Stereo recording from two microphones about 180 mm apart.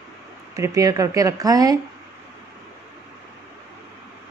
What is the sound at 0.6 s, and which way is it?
Speech, 20° right (ahead or behind).